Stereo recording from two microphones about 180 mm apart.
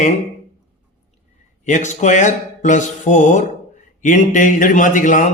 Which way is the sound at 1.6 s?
45° left (ahead or behind).